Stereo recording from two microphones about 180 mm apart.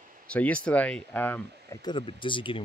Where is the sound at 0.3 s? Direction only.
5° left (ahead or behind).